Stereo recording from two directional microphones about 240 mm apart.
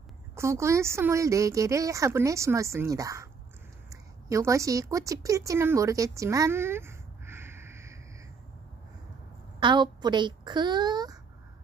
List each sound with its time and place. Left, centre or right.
0.4 s speech: centre
9.6 s speech: centre